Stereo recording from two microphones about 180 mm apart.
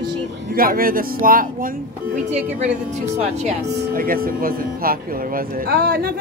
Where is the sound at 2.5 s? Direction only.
40° right (ahead or behind).